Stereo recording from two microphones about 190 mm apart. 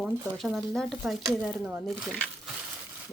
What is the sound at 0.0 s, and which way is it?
Speech, centre (ahead or behind).